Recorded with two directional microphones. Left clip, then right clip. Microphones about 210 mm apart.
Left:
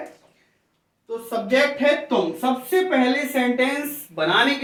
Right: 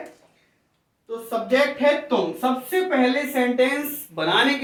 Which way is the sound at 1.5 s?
15° right (ahead or behind).